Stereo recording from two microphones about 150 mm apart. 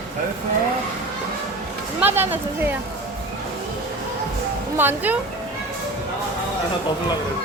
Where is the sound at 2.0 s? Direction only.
15° right (ahead or behind).